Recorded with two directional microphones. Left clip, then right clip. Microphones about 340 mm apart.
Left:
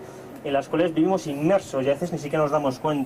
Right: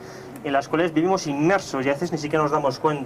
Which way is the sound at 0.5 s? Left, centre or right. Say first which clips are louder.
Right 1 dB; right.